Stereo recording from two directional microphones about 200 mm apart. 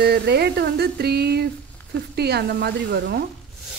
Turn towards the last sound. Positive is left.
turn(degrees=-50)  # may be behind; listen again after turning